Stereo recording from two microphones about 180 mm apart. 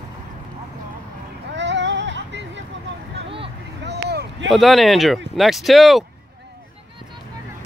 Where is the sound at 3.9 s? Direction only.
70° right (ahead or behind).